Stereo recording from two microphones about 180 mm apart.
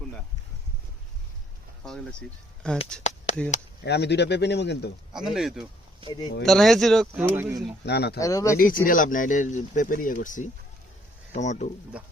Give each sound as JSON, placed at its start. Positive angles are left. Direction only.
{"t": 1.8, "sound": "speech", "side_deg": 5}
{"t": 3.0, "sound": "a sound", "side_deg": 40}
{"t": 3.8, "sound": "speech", "side_deg": 70}
{"t": 5.1, "sound": "speech", "side_deg": -5}
{"t": 6.0, "sound": "speech", "side_deg": -30}
{"t": 6.4, "sound": "speech", "side_deg": 0}
{"t": 7.3, "sound": "speech", "side_deg": -10}
{"t": 7.9, "sound": "speech", "side_deg": 65}
{"t": 8.2, "sound": "speech", "side_deg": 20}
{"t": 8.5, "sound": "speech", "side_deg": 50}